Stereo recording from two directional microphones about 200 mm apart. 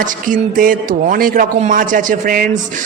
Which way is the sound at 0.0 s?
40° right (ahead or behind).